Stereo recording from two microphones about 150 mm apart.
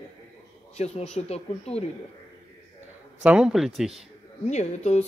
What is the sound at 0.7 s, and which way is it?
Speech, 45° left (ahead or behind).